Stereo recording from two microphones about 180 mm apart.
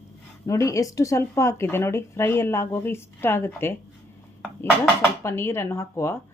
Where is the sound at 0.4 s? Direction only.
15° left (ahead or behind).